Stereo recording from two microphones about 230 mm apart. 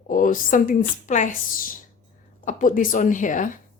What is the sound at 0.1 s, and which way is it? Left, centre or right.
Speech, left.